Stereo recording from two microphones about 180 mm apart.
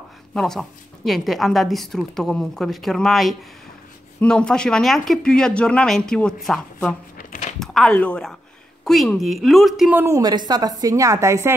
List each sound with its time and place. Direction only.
0.3 s a woman's voice: centre (ahead or behind)
7.2 s a sound: 45° left (ahead or behind)
7.5 s a woman's voice: centre (ahead or behind); by 11.5 s 15° right (ahead or behind)